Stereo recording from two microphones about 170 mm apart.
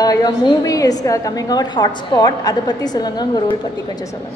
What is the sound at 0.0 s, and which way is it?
A woman's voice, 20° left (ahead or behind).